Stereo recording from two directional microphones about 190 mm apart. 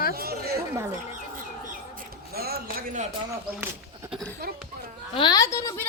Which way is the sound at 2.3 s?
55° right (ahead or behind).